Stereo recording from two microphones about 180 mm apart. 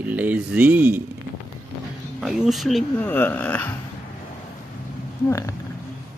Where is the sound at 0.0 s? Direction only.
10° right (ahead or behind).